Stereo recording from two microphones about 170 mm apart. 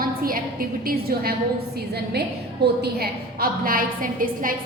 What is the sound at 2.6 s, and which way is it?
A woman's voice, 70° right (ahead or behind).